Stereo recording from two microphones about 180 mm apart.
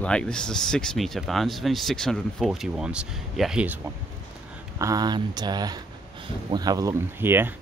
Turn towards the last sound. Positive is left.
turn(degrees=-10)  # may be behind; listen again after turning